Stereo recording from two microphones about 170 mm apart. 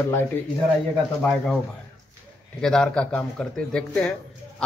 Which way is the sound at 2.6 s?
5° left (ahead or behind).